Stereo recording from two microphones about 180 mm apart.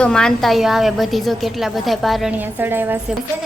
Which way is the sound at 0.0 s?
5° left (ahead or behind).